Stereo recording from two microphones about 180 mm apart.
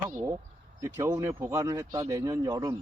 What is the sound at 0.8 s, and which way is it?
Speech, 15° right (ahead or behind).